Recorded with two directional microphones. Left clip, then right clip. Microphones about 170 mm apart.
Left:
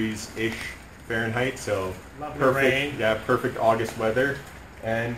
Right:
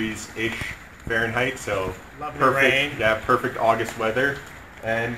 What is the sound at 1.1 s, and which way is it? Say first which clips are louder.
Speech: right 3 dB; centre (ahead or behind).